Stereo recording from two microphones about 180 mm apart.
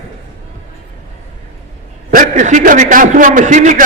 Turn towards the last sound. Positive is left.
turn(degrees=-45)  # may be behind; listen again after turning